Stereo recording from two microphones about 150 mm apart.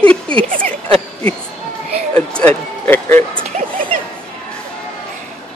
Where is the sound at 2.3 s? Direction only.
5° left (ahead or behind).